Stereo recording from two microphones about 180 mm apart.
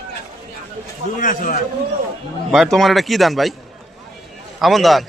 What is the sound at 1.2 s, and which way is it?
Speech, 50° left (ahead or behind).